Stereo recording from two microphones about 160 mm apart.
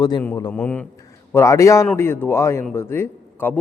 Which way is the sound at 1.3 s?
20° left (ahead or behind).